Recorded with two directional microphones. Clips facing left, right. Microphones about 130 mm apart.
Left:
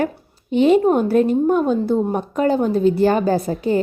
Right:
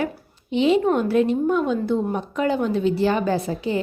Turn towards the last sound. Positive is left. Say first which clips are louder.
# left 4 dB
turn(degrees=45)  # may be behind; listen again after turning